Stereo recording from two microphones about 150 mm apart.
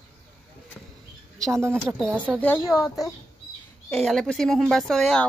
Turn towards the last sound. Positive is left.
turn(degrees=5)  # may be behind; listen again after turning